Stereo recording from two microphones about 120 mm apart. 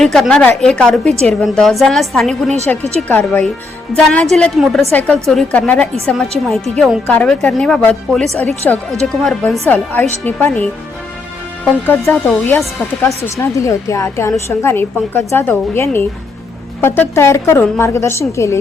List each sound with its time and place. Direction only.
0.0 s a woman's voice: 5° left (ahead or behind)
7.1 s speech: 10° left (ahead or behind)
8.7 s a woman's voice: 15° left (ahead or behind)